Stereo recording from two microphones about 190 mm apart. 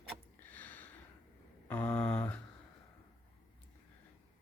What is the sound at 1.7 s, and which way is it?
Speech, 5° left (ahead or behind).